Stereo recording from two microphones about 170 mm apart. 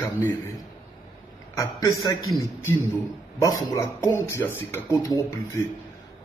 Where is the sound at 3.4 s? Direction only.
20° left (ahead or behind).